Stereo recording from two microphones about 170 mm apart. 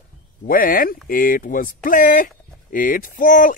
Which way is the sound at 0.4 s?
55° left (ahead or behind).